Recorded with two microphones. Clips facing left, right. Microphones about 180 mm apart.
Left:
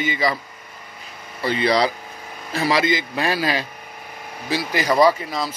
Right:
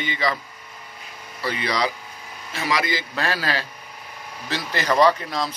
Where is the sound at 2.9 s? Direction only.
15° left (ahead or behind).